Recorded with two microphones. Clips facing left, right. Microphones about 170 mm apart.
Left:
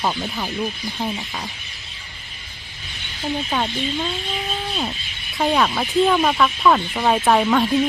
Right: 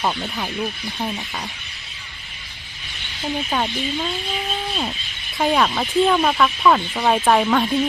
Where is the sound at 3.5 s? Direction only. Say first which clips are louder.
Right 1 dB; 5° right (ahead or behind).